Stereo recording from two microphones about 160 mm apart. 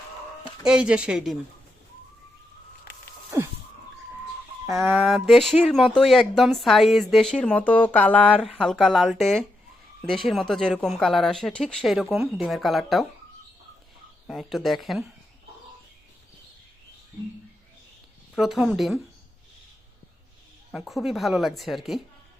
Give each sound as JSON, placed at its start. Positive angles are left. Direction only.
{"t": 0.6, "sound": "speech", "side_deg": -5}
{"t": 3.3, "sound": "a sound", "side_deg": -15}
{"t": 4.7, "sound": "speech", "side_deg": 0}
{"t": 14.3, "sound": "speech", "side_deg": 0}
{"t": 18.3, "sound": "speech", "side_deg": -5}
{"t": 20.7, "sound": "speech", "side_deg": 0}